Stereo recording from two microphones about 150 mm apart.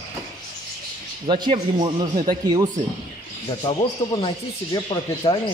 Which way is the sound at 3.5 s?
30° left (ahead or behind).